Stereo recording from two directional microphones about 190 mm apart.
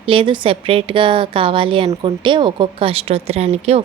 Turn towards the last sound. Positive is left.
turn(degrees=-35)  # may be behind; listen again after turning